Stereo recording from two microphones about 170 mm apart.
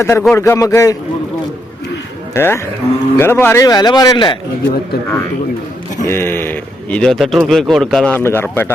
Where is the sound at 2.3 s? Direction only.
15° left (ahead or behind).